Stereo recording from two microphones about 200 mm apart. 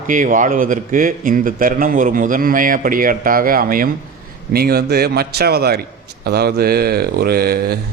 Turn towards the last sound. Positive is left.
turn(degrees=-50)  # may be behind; listen again after turning